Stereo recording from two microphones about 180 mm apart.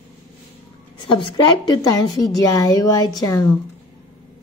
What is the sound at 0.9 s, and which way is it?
A woman's voice, 30° left (ahead or behind).